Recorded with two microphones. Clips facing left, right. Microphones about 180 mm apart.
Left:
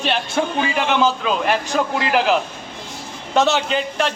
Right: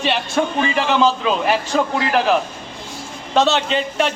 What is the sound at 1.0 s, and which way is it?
Speech, centre (ahead or behind).